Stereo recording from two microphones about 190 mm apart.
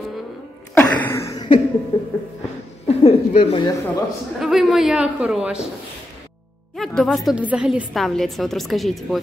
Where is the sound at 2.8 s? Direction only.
35° left (ahead or behind).